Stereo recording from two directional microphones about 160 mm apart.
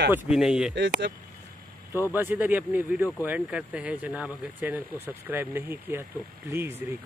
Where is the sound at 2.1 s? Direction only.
10° right (ahead or behind).